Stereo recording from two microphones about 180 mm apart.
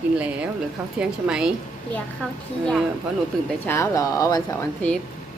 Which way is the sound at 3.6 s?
15° left (ahead or behind).